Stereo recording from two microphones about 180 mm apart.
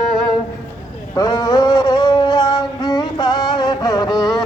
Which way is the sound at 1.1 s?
25° left (ahead or behind).